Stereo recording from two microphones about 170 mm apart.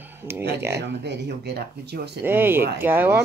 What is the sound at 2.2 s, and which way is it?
Speech, 10° right (ahead or behind).